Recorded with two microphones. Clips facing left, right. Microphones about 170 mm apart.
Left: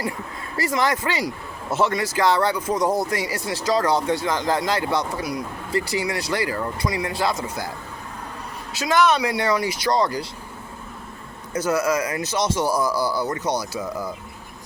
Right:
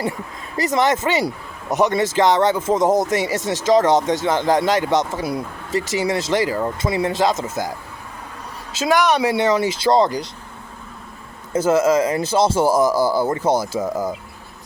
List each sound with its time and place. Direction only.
0.5 s speech: 20° right (ahead or behind)
8.7 s speech: 15° right (ahead or behind)
11.5 s speech: 25° right (ahead or behind)
12.9 s speech: 45° right (ahead or behind)
13.2 s speech: 25° right (ahead or behind)
13.7 s speech: 45° right (ahead or behind)